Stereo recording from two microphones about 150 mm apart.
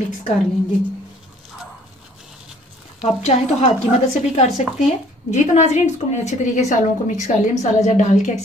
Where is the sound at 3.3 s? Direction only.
50° left (ahead or behind).